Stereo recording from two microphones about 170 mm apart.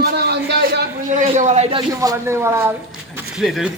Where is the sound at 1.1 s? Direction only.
45° right (ahead or behind).